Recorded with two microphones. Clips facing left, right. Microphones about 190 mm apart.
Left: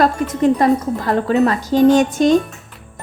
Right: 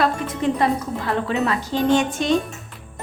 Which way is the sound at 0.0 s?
40° left (ahead or behind).